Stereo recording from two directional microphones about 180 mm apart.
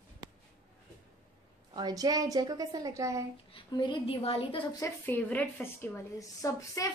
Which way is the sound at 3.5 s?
25° left (ahead or behind).